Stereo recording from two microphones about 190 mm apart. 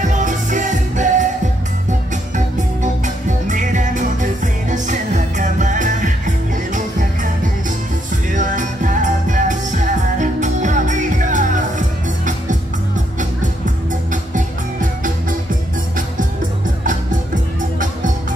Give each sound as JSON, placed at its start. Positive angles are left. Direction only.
{"t": 0.0, "sound": "music", "side_deg": -40}
{"t": 2.3, "sound": "music", "side_deg": -40}
{"t": 8.3, "sound": "music", "side_deg": -40}
{"t": 14.3, "sound": "music", "side_deg": -45}